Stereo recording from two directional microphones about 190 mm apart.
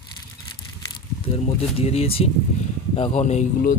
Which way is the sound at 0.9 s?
30° left (ahead or behind).